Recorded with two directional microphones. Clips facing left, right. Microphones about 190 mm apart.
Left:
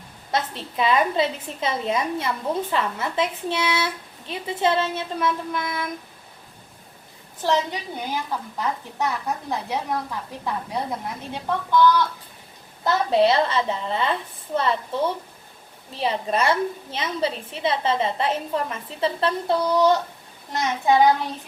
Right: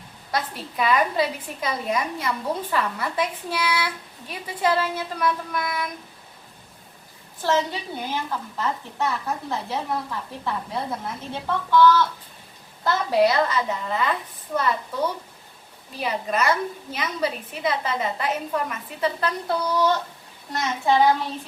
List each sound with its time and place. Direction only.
0.3 s a woman's voice: 25° left (ahead or behind)
7.4 s a woman's voice: 15° left (ahead or behind)
12.8 s a woman's voice: 25° left (ahead or behind)
16.0 s a woman's voice: 30° left (ahead or behind)